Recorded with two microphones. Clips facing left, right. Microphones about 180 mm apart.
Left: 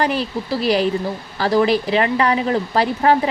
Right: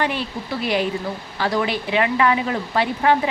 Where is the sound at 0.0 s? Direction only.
40° left (ahead or behind).